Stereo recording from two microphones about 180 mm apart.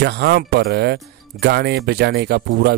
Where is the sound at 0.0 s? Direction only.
65° right (ahead or behind).